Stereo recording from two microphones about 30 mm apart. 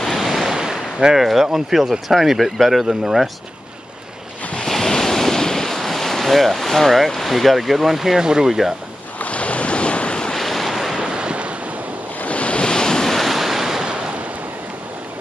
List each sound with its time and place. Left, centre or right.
0.2 s waves: centre
0.5 s speech: centre
2.8 s speech: centre
4.8 s waves: centre
7.2 s speech: centre
8.2 s speech: right
8.5 s speech: centre
9.2 s waves: left
10.3 s waves: centre
11.0 s waves: right
12.3 s waves: left
12.6 s waves: left
13.1 s waves: centre